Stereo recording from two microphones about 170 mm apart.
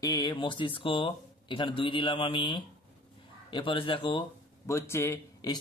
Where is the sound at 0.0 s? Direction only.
25° left (ahead or behind).